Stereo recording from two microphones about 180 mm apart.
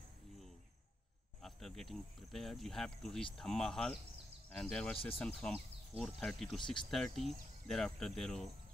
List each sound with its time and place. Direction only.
1.4 s speech: centre (ahead or behind)
6.6 s speech: 25° left (ahead or behind)
7.2 s speech: centre (ahead or behind)